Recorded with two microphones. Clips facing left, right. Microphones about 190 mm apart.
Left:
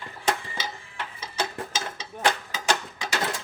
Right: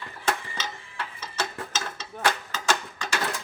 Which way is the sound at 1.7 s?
10° left (ahead or behind).